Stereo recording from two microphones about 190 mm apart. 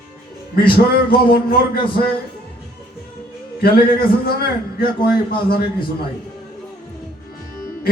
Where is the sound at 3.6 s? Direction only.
50° left (ahead or behind).